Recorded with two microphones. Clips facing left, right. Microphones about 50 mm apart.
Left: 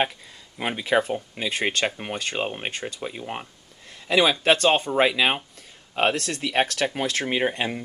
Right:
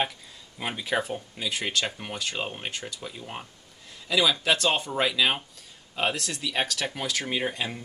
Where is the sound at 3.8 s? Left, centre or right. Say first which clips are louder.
Left 4 dB; left.